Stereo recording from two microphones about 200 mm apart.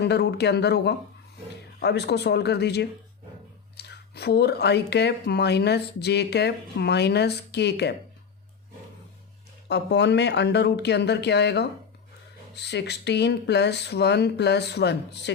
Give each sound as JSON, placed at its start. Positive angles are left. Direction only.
{"t": 0.0, "sound": "speech", "side_deg": 55}
{"t": 9.6, "sound": "speech", "side_deg": 60}